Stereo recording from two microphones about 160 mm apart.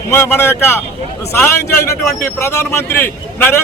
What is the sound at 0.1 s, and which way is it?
A man's voice, 15° left (ahead or behind).